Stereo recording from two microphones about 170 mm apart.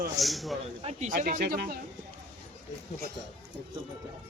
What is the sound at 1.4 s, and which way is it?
Speech, 65° right (ahead or behind).